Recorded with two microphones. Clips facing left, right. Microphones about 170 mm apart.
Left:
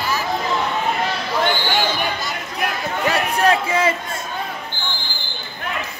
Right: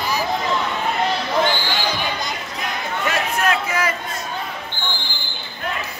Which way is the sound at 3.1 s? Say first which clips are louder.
Left 4 dB; 35° left (ahead or behind).